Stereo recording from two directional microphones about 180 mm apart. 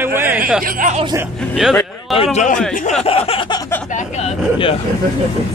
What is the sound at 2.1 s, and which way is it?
Speech, 35° left (ahead or behind).